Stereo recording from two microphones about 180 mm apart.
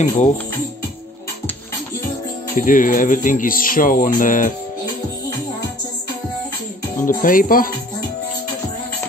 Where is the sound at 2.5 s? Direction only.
50° left (ahead or behind).